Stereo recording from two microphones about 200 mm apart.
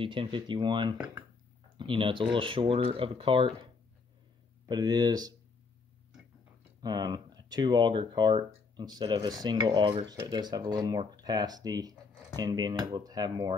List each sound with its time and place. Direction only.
0.0 s speech: 25° right (ahead or behind)
4.6 s speech: 20° right (ahead or behind)
6.8 s speech: 20° right (ahead or behind)